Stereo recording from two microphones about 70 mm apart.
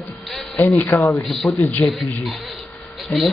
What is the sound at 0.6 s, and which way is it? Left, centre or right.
Speech, left.